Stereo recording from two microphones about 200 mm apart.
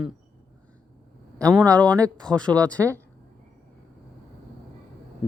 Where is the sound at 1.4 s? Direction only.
15° right (ahead or behind).